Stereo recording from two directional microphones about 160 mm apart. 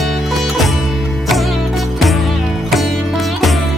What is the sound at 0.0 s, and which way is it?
Music, centre (ahead or behind).